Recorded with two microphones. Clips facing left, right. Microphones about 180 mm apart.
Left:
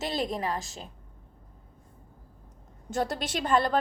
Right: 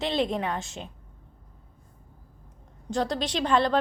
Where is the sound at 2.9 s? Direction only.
5° left (ahead or behind).